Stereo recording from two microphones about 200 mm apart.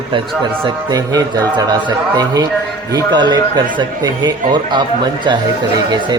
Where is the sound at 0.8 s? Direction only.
20° right (ahead or behind).